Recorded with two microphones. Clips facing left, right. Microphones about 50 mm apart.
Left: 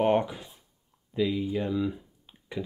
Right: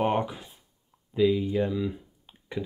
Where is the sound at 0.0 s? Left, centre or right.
Centre.